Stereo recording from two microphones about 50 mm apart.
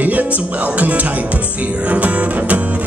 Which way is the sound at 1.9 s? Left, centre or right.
Right.